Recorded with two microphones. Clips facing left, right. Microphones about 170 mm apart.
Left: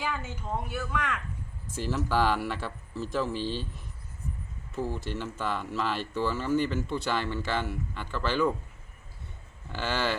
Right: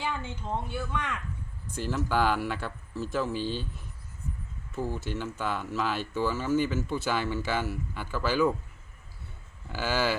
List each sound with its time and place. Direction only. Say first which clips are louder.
0.7 s speech: left 1 dB; 25° right (ahead or behind)
1.7 s speech: even; centre (ahead or behind)
9.7 s speech: right 2 dB; 5° right (ahead or behind)